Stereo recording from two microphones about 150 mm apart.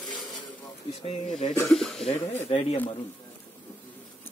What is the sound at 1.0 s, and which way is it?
Speech, 45° left (ahead or behind).